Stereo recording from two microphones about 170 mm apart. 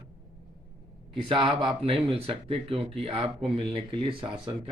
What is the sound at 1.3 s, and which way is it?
Speech, 30° right (ahead or behind).